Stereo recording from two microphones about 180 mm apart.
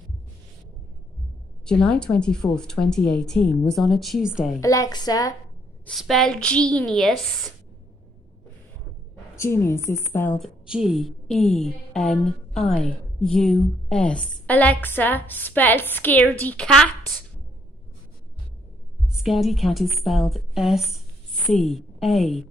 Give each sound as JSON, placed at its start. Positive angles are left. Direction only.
{"t": 1.7, "sound": "speech", "side_deg": 5}
{"t": 4.6, "sound": "a woman's voice", "side_deg": 20}
{"t": 5.9, "sound": "speech", "side_deg": 0}
{"t": 9.3, "sound": "a woman's voice", "side_deg": 15}
{"t": 10.4, "sound": "a woman's voice", "side_deg": 0}
{"t": 19.0, "sound": "a woman's voice", "side_deg": 0}